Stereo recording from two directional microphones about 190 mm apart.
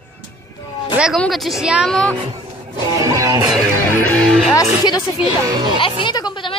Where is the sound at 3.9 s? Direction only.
10° left (ahead or behind).